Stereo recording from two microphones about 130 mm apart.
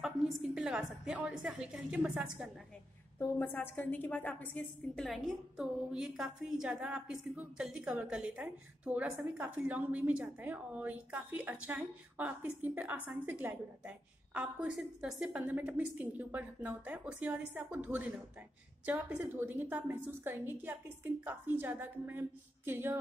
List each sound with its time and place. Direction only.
0.0 s a woman's voice: 5° right (ahead or behind)
3.2 s a woman's voice: 15° left (ahead or behind); by 22.9 s 15° right (ahead or behind)